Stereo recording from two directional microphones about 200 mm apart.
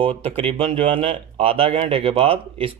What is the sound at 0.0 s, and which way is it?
Speech, 30° right (ahead or behind).